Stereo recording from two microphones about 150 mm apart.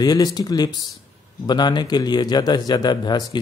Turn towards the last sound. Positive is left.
turn(degrees=30)  # may be behind; listen again after turning